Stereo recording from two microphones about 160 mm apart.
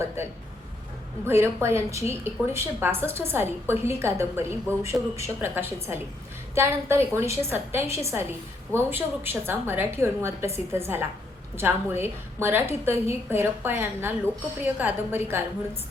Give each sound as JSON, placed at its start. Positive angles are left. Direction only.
{"t": 1.3, "sound": "a woman's voice", "side_deg": -15}